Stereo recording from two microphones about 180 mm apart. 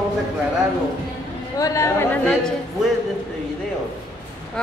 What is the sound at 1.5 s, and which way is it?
Speech, 20° left (ahead or behind).